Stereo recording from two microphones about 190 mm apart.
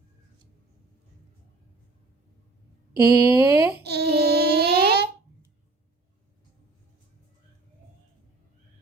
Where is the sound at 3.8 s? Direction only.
60° right (ahead or behind).